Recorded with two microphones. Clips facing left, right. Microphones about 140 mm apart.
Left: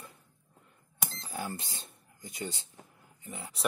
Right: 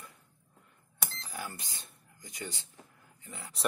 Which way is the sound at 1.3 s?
25° left (ahead or behind).